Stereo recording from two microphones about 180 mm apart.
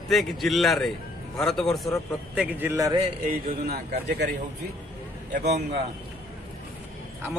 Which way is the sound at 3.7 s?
65° right (ahead or behind).